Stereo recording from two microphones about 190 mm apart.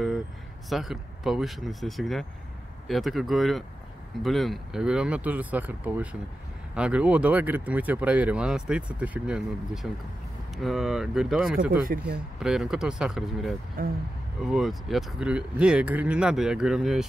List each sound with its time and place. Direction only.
0.7 s speech: centre (ahead or behind)
13.8 s speech: 50° right (ahead or behind)
14.4 s speech: centre (ahead or behind)